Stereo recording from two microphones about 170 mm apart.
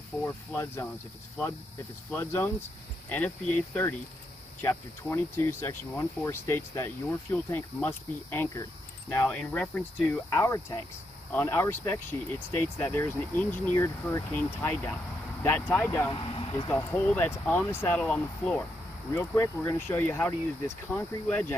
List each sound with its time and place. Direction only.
0.2 s speech: 15° left (ahead or behind)
2.0 s speech: 15° left (ahead or behind)
16.1 s speech: 30° left (ahead or behind)
16.6 s speech: 15° left (ahead or behind)